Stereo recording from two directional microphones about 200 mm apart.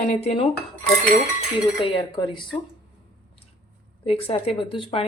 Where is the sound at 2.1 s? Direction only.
25° left (ahead or behind).